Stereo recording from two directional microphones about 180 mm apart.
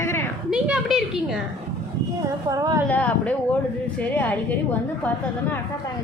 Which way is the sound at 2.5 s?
20° right (ahead or behind).